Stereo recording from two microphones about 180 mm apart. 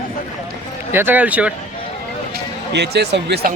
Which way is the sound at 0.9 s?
10° right (ahead or behind).